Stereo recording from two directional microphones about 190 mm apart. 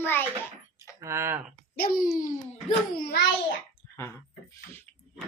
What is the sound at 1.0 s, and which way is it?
Speech, 15° right (ahead or behind).